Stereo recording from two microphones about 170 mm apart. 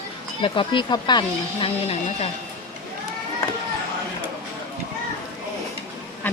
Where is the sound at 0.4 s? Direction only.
30° left (ahead or behind).